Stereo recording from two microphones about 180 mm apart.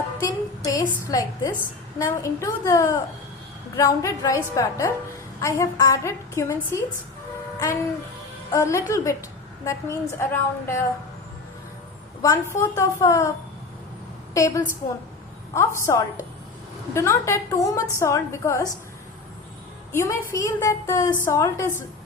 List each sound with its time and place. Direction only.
0.2 s a sound: 20° left (ahead or behind)
1.0 s a woman's voice: 20° left (ahead or behind)
8.5 s a woman's voice: 15° left (ahead or behind)
12.2 s a woman's voice: 15° left (ahead or behind)
14.3 s a woman's voice: 15° left (ahead or behind)
19.9 s a woman's voice: 15° left (ahead or behind)